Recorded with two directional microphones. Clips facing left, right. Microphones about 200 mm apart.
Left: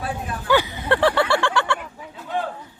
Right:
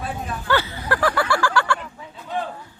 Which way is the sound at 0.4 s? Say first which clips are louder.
Left 4 dB; 15° left (ahead or behind).